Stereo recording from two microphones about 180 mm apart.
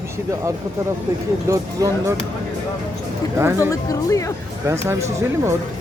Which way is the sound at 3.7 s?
15° left (ahead or behind).